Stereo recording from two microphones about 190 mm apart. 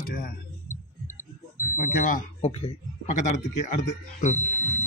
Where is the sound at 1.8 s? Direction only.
45° left (ahead or behind).